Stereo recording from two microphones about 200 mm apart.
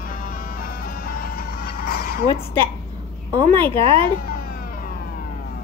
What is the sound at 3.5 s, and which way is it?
Speech, 25° right (ahead or behind).